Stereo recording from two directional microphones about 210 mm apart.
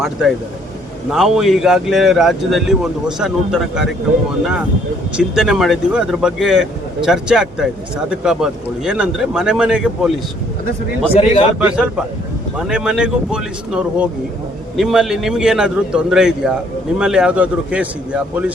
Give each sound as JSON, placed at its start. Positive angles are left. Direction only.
{"t": 1.1, "sound": "a man's voice", "side_deg": 0}
{"t": 5.1, "sound": "a man's voice", "side_deg": -5}
{"t": 11.1, "sound": "a man's voice", "side_deg": 30}
{"t": 11.6, "sound": "a man's voice", "side_deg": -5}